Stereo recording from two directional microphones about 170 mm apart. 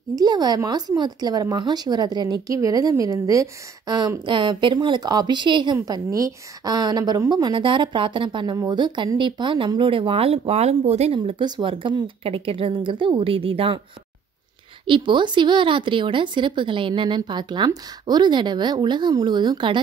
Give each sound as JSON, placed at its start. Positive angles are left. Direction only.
{"t": 0.1, "sound": "a woman's voice", "side_deg": -25}
{"t": 14.9, "sound": "a woman's voice", "side_deg": -30}